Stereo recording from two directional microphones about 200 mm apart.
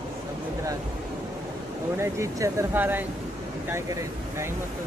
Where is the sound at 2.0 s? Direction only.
15° right (ahead or behind).